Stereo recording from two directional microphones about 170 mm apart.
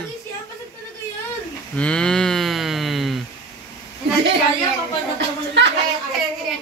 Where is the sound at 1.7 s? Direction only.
5° left (ahead or behind).